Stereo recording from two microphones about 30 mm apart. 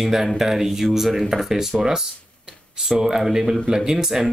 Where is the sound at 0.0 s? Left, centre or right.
Centre.